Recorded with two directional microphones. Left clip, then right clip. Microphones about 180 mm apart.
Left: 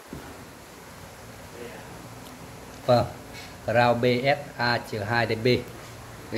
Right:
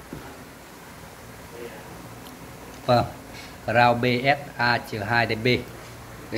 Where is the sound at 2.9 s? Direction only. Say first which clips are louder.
Right 1 dB; 10° left (ahead or behind).